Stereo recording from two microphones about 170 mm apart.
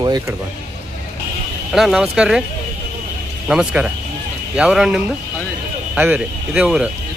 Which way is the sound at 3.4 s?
5° right (ahead or behind).